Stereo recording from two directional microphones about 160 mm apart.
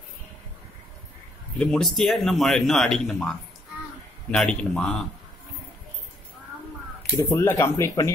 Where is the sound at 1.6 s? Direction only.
5° left (ahead or behind).